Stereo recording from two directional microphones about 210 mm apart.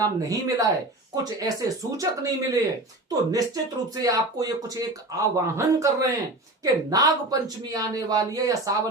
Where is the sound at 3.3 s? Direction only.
15° right (ahead or behind).